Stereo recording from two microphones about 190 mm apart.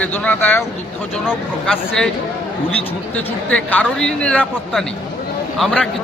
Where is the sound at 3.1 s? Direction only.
5° left (ahead or behind).